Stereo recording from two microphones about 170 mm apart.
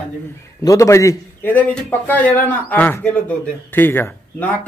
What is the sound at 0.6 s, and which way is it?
A man's voice, 20° left (ahead or behind).